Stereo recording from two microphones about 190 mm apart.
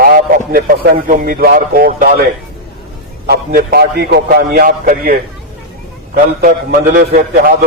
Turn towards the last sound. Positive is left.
turn(degrees=-50)  # may be behind; listen again after turning